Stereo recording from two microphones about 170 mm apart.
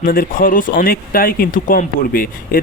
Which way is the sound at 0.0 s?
55° left (ahead or behind).